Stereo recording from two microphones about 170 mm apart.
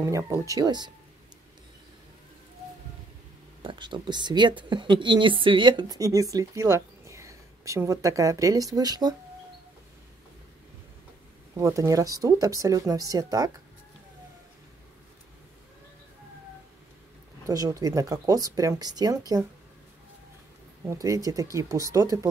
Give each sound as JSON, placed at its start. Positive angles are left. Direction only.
{"t": 0.0, "sound": "speech", "side_deg": -15}
{"t": 3.6, "sound": "speech", "side_deg": -30}
{"t": 11.5, "sound": "speech", "side_deg": -20}
{"t": 17.5, "sound": "speech", "side_deg": -20}
{"t": 20.8, "sound": "speech", "side_deg": -20}